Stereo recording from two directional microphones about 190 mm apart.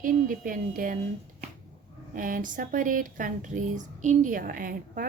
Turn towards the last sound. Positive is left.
turn(degrees=-45)  # may be behind; listen again after turning